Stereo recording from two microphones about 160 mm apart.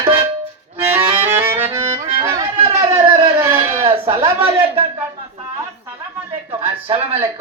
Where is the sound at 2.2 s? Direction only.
20° right (ahead or behind).